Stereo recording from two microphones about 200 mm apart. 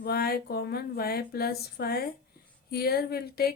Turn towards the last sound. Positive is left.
turn(degrees=50)  # may be behind; listen again after turning